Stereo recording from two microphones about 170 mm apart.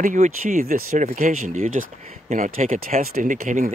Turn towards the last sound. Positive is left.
turn(degrees=-50)  # may be behind; listen again after turning